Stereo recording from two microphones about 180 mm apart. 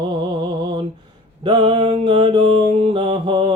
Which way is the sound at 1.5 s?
30° right (ahead or behind).